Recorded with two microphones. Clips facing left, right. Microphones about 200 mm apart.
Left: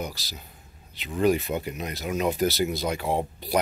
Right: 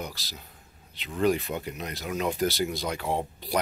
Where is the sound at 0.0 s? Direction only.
Centre (ahead or behind).